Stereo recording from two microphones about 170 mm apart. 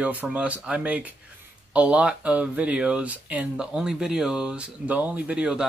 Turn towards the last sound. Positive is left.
turn(degrees=-5)  # may be behind; listen again after turning